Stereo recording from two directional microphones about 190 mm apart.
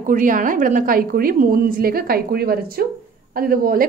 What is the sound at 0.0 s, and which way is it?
A woman's voice, 45° right (ahead or behind).